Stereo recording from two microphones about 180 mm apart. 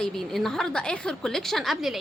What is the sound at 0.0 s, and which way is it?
A woman's voice, centre (ahead or behind).